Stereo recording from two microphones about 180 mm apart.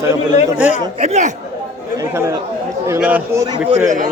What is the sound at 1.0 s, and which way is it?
Speech, 40° right (ahead or behind).